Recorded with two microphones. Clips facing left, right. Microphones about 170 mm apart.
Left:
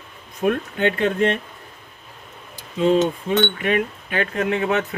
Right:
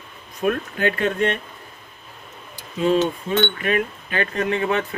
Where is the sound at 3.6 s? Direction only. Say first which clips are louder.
Left 1 dB; 15° left (ahead or behind).